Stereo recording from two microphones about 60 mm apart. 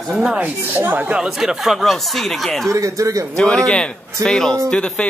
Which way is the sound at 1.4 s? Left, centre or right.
Centre.